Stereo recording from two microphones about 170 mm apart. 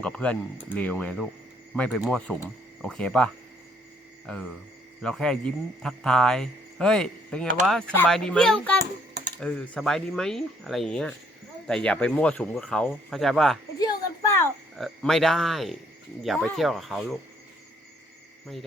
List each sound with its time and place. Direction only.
0.0 s speech: 5° left (ahead or behind)
5.0 s speech: 5° left (ahead or behind)
13.7 s a sound: 20° left (ahead or behind)
14.8 s speech: centre (ahead or behind)